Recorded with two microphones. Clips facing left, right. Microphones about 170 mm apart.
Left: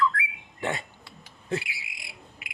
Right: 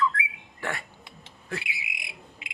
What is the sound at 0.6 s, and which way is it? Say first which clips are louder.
Music: left 3 dB; 20° left (ahead or behind).